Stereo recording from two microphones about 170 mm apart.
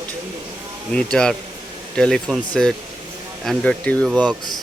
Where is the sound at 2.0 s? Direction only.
5° left (ahead or behind).